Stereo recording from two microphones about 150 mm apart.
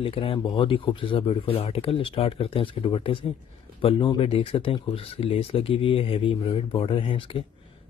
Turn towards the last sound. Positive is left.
turn(degrees=35)  # may be behind; listen again after turning